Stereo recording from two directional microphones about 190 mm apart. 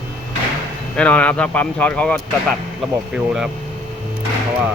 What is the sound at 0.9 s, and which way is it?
Speech, 5° left (ahead or behind).